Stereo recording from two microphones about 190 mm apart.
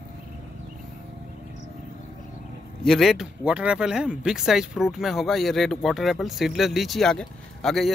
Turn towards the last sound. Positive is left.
turn(degrees=0)  # may be behind; listen again after turning